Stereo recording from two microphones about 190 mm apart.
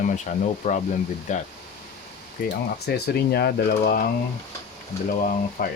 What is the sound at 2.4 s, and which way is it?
Speech, 60° left (ahead or behind).